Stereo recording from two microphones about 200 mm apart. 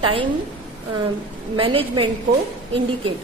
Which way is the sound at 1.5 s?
25° right (ahead or behind).